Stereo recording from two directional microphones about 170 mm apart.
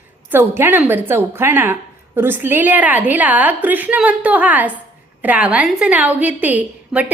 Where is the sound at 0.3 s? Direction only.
15° right (ahead or behind).